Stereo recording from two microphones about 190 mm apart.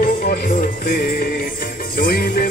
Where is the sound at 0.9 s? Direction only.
50° left (ahead or behind).